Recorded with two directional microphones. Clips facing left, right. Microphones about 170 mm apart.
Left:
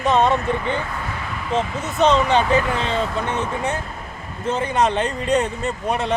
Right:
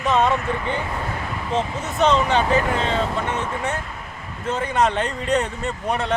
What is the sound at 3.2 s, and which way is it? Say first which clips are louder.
Speech: left 1 dB; 5° right (ahead or behind).